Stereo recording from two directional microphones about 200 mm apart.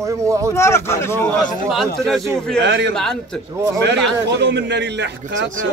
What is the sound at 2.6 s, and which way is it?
A man's voice, 60° right (ahead or behind).